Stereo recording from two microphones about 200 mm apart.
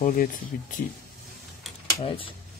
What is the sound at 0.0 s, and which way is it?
Speech, 40° left (ahead or behind).